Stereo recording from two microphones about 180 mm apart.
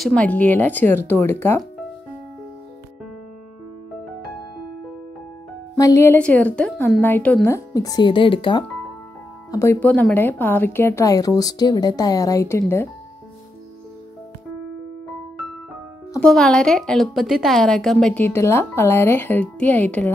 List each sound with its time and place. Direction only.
0.0 s a woman's voice: 5° left (ahead or behind)
5.8 s a woman's voice: 15° left (ahead or behind)
9.5 s a woman's voice: 15° left (ahead or behind)
16.2 s a woman's voice: 5° left (ahead or behind)